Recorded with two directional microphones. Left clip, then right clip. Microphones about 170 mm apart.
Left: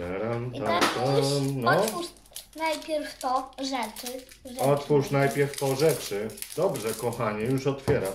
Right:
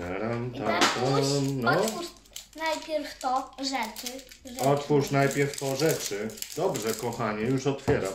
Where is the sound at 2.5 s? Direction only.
15° left (ahead or behind).